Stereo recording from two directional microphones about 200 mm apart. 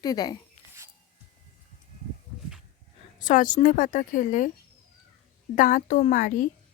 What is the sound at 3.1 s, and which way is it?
A woman's voice, 40° left (ahead or behind).